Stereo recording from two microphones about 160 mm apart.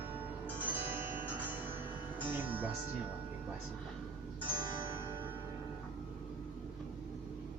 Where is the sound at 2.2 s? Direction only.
10° right (ahead or behind).